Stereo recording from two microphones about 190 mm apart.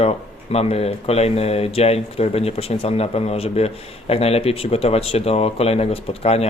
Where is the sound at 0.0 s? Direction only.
30° left (ahead or behind).